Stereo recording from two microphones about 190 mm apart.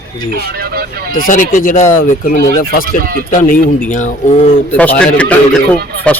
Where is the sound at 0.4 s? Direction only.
55° right (ahead or behind).